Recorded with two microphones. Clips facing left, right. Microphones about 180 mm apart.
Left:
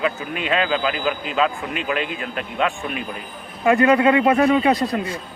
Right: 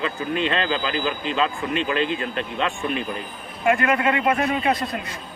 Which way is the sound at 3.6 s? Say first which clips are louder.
Left 5 dB; 30° left (ahead or behind).